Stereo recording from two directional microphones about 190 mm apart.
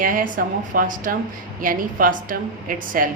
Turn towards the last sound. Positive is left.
turn(degrees=-45)  # may be behind; listen again after turning